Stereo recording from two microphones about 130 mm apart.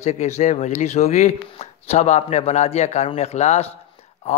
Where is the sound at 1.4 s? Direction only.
50° left (ahead or behind).